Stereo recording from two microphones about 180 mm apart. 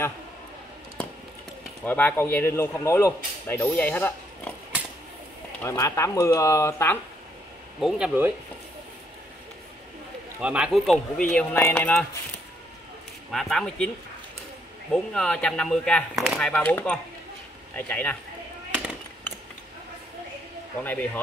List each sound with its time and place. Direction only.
1.9 s speech: 10° left (ahead or behind)
5.6 s speech: 15° left (ahead or behind)
7.8 s speech: 5° right (ahead or behind)
10.4 s speech: 5° right (ahead or behind)
13.3 s speech: 5° left (ahead or behind)
14.9 s speech: 5° left (ahead or behind)
20.8 s speech: 10° left (ahead or behind)